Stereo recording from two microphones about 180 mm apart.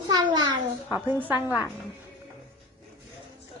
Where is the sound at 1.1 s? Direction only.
10° right (ahead or behind).